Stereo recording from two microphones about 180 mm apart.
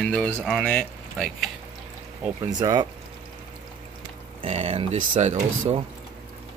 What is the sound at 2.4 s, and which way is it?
Speech, 20° right (ahead or behind).